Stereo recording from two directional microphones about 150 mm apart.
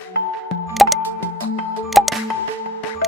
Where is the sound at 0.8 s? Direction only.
Centre (ahead or behind).